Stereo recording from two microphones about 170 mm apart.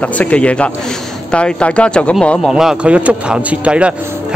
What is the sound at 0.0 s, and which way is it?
Speech, 10° left (ahead or behind).